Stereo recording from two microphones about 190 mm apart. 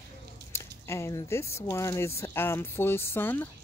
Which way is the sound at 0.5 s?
15° left (ahead or behind).